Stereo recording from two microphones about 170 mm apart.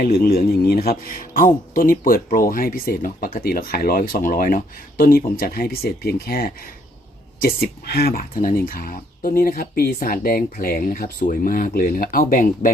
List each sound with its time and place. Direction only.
0.0 s speech: 60° left (ahead or behind)